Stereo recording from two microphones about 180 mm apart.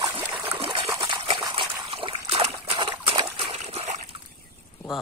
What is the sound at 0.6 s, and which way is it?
Trickle, 30° right (ahead or behind).